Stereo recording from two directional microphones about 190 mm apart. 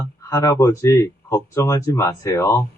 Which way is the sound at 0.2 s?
15° left (ahead or behind).